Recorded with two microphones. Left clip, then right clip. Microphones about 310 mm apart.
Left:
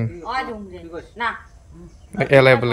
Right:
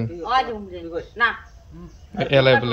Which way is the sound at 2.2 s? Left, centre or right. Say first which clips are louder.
Left 3 dB; centre.